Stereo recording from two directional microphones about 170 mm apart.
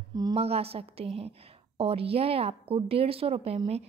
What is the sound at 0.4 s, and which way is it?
A woman's voice, 35° right (ahead or behind).